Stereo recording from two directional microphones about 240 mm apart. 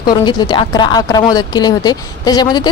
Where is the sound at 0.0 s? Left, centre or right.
Centre.